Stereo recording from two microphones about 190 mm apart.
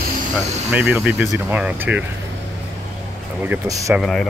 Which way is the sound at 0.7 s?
5° right (ahead or behind).